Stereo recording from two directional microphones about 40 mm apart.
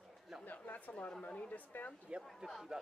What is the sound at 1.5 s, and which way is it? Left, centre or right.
Speech, left.